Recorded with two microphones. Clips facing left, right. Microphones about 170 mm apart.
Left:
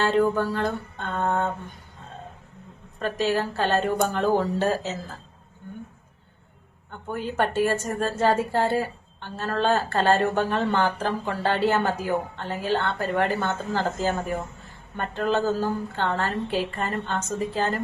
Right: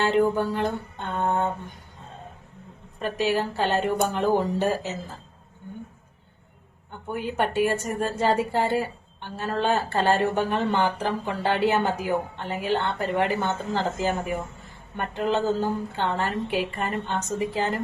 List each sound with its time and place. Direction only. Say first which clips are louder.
0.0 s a woman's voice: even; 15° right (ahead or behind)
3.0 s a woman's voice: even; 15° right (ahead or behind)
7.1 s a woman's voice: even; 15° right (ahead or behind)